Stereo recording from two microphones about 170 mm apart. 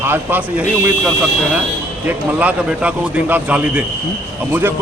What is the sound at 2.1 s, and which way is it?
Speech, 10° right (ahead or behind).